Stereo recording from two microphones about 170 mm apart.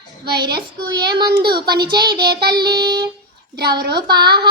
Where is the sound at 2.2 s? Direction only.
70° right (ahead or behind).